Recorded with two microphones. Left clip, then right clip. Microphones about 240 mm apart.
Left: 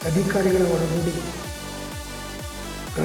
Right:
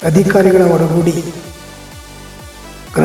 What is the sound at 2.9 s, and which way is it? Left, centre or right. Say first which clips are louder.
Music: right 13 dB; right.